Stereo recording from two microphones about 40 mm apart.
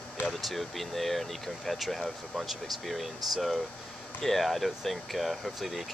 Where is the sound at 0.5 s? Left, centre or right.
Centre.